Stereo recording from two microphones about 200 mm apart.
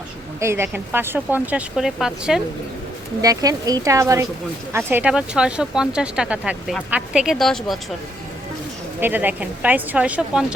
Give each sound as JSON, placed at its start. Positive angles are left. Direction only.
{"t": 0.3, "sound": "speech", "side_deg": -15}
{"t": 3.2, "sound": "speech", "side_deg": -20}
{"t": 9.0, "sound": "speech", "side_deg": -10}